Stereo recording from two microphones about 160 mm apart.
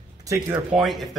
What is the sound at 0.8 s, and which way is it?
Speech, centre (ahead or behind).